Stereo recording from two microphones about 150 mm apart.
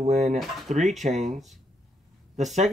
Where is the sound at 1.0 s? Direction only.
55° right (ahead or behind).